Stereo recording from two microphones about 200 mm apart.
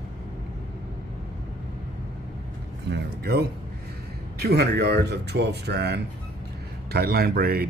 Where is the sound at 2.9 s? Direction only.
55° right (ahead or behind).